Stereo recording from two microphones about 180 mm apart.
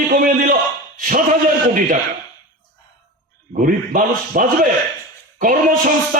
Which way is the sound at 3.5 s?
50° right (ahead or behind).